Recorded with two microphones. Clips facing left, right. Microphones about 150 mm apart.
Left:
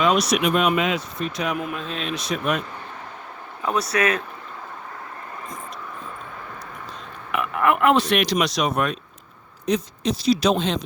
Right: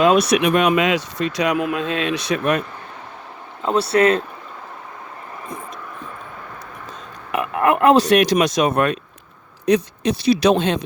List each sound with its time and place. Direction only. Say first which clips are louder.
0.2 s speech: right 4 dB; 70° right (ahead or behind)
3.6 s speech: right 6 dB; 30° right (ahead or behind)
7.3 s speech: right 3 dB; 40° right (ahead or behind); by 8.9 s 55° right (ahead or behind)
9.6 s speech: right 5 dB; 65° right (ahead or behind)